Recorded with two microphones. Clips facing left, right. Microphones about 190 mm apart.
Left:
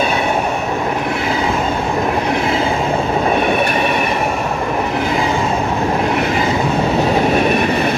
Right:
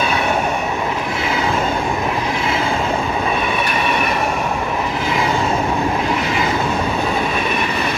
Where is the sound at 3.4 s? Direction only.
50° left (ahead or behind).